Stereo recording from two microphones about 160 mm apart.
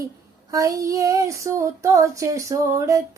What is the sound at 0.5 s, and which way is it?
Child singing, 20° right (ahead or behind).